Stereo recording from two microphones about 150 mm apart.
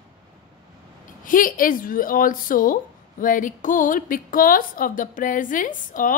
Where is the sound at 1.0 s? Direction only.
65° left (ahead or behind).